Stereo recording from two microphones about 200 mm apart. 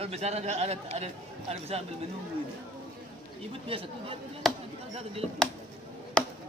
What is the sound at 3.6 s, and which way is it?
Speech, 25° right (ahead or behind).